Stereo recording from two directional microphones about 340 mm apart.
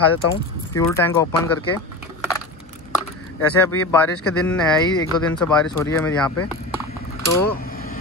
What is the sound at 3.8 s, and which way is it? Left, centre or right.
Speech, centre.